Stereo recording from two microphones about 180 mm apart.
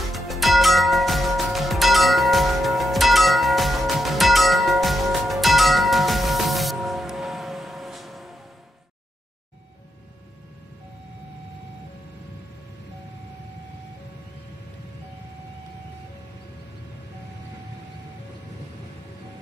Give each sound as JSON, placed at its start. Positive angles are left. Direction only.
{"t": 0.1, "sound": "music", "side_deg": 0}